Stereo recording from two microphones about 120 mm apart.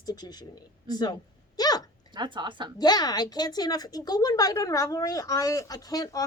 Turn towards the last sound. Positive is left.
turn(degrees=30)  # may be behind; listen again after turning